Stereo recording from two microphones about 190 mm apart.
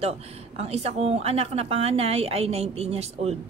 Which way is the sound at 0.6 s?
35° right (ahead or behind).